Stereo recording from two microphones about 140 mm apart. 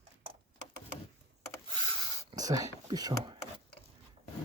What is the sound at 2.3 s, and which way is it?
Speech, 25° right (ahead or behind).